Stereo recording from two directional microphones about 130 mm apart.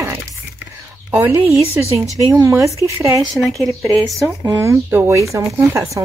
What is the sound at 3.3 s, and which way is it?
Speech, centre (ahead or behind).